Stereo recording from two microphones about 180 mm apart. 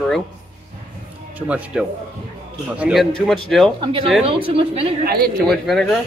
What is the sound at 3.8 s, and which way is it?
Speech, 30° right (ahead or behind).